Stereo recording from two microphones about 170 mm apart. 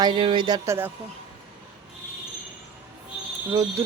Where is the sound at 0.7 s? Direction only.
10° right (ahead or behind).